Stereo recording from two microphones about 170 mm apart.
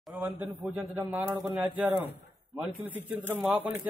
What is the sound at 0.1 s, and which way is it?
A man's voice, 10° right (ahead or behind).